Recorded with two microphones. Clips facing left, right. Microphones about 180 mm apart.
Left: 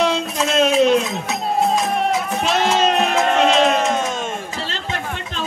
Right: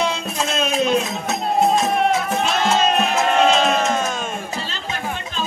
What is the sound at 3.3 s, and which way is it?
Sheep, centre (ahead or behind).